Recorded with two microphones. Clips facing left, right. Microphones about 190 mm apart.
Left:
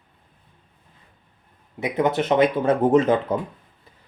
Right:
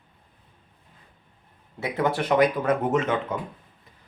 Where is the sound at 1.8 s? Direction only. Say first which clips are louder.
Left 4 dB; 20° left (ahead or behind); by 3.3 s 35° left (ahead or behind).